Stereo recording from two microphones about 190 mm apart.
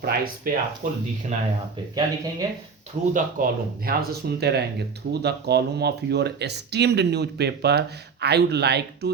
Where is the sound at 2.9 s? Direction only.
40° right (ahead or behind).